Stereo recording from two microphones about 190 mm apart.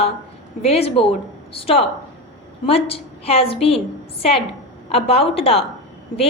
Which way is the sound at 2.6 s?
30° left (ahead or behind).